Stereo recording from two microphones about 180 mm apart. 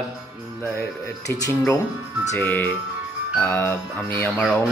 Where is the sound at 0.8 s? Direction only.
15° left (ahead or behind).